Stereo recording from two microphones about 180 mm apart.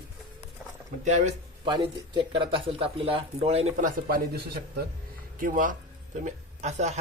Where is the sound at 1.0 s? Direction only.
40° right (ahead or behind).